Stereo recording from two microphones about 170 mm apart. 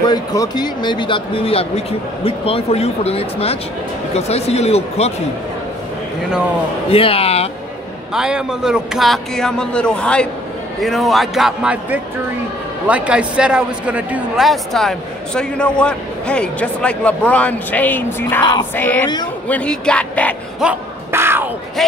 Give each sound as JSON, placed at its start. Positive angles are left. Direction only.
{"t": 0.0, "sound": "speech", "side_deg": 20}
{"t": 6.9, "sound": "speech", "side_deg": 35}
{"t": 8.1, "sound": "a man's voice", "side_deg": -5}
{"t": 18.4, "sound": "music", "side_deg": 25}
{"t": 18.8, "sound": "speech", "side_deg": 10}
{"t": 20.6, "sound": "a sound", "side_deg": -15}